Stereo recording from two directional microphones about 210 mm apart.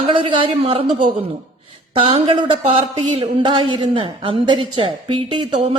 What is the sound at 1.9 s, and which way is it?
Speech, 25° right (ahead or behind).